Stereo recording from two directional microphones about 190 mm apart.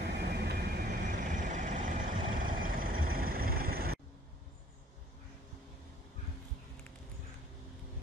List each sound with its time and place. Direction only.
0.0 s vehicle: 60° right (ahead or behind)
1.2 s vehicle: 40° right (ahead or behind)